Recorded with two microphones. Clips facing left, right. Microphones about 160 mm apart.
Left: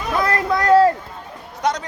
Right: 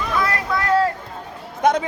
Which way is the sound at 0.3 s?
40° left (ahead or behind).